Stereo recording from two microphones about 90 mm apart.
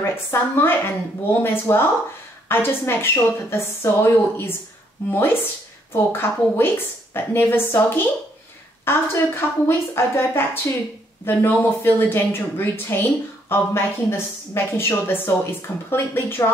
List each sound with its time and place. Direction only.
0.0 s a woman's voice: 25° left (ahead or behind)